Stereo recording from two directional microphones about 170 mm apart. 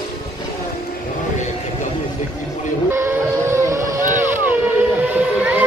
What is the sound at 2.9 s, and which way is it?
Boat, 15° right (ahead or behind).